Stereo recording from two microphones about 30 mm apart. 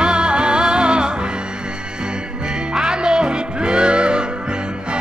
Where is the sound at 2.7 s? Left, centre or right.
Right.